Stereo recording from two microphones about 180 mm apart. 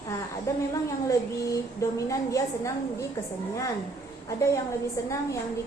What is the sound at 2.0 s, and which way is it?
Speech, 20° left (ahead or behind).